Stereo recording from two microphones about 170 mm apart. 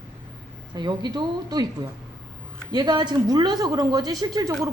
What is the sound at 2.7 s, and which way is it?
A woman's voice, 25° right (ahead or behind).